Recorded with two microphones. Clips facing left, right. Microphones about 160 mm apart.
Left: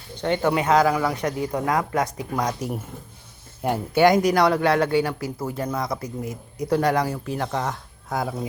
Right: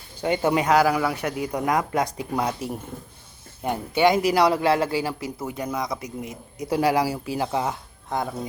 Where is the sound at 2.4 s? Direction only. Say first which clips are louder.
Left 1 dB; centre (ahead or behind).